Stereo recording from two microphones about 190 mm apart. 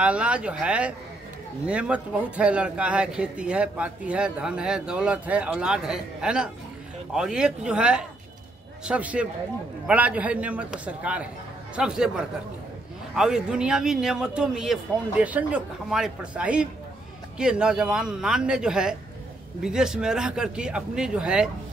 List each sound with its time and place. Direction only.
0.0 s a man's voice: 5° right (ahead or behind)
13.1 s speech: 5° right (ahead or behind)